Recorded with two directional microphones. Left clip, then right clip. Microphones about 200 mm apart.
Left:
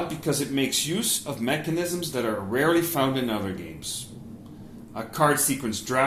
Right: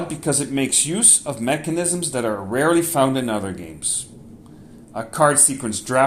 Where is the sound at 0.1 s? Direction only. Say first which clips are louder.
Right 4 dB; 50° right (ahead or behind).